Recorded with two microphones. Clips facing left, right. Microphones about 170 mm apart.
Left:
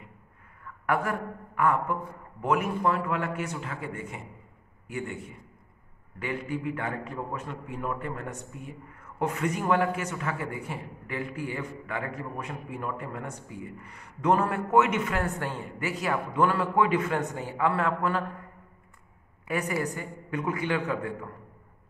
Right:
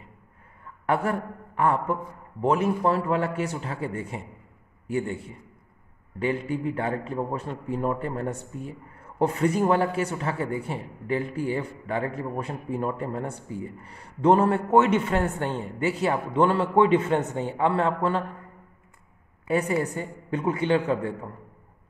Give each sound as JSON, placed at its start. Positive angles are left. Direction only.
{"t": 0.8, "sound": "a woman's voice", "side_deg": -30}
{"t": 19.4, "sound": "a woman's voice", "side_deg": -30}